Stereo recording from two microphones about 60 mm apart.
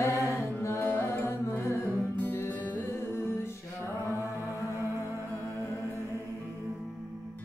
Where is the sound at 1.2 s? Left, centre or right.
Left.